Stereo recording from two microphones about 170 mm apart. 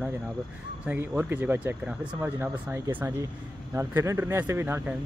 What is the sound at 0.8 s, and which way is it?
Speech, 10° right (ahead or behind).